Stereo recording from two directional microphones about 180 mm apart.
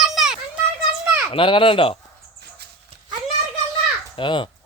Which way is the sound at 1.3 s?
30° left (ahead or behind).